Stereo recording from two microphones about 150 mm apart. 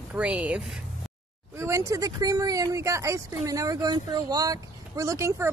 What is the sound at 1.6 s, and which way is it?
Speech, 20° right (ahead or behind).